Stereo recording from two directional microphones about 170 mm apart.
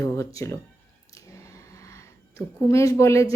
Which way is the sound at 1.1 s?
20° left (ahead or behind).